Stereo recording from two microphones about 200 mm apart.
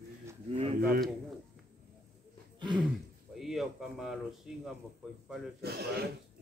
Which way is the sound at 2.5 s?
25° right (ahead or behind).